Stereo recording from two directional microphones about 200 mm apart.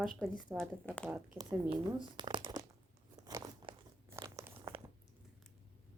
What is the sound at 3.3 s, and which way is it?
Crunch, 15° right (ahead or behind).